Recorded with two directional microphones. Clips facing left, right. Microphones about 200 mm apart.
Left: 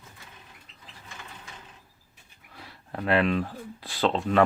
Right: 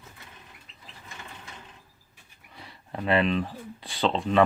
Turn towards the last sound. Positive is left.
turn(degrees=0)  # may be behind; listen again after turning